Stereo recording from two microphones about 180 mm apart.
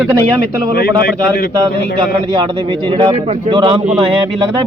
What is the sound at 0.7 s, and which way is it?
Speech, 55° left (ahead or behind).